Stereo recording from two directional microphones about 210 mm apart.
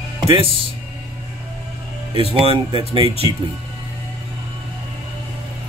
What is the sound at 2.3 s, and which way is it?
Speech, 25° right (ahead or behind).